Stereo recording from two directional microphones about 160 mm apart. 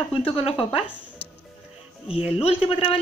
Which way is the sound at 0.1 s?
35° left (ahead or behind).